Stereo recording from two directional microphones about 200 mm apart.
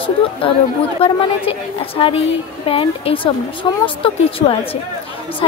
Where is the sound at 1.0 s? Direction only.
30° left (ahead or behind).